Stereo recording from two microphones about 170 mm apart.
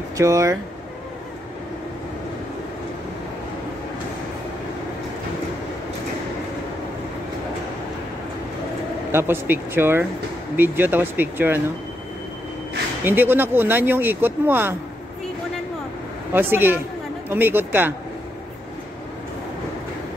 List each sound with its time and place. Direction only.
0.2 s speech: 15° right (ahead or behind)
9.1 s speech: 15° right (ahead or behind)
13.0 s speech: 10° right (ahead or behind)
16.3 s speech: 10° right (ahead or behind)